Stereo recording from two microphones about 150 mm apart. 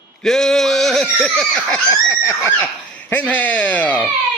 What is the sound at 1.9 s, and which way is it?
Speech, 20° left (ahead or behind).